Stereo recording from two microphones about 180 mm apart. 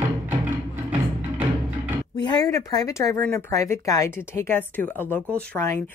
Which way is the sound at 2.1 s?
20° left (ahead or behind).